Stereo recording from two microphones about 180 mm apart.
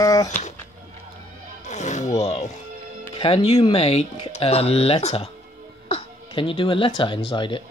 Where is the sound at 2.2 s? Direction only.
35° left (ahead or behind).